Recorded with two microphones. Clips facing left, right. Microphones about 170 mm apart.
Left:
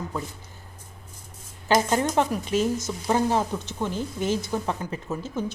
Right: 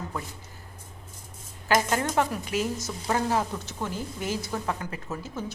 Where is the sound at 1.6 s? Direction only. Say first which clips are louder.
Left 3 dB; 20° left (ahead or behind).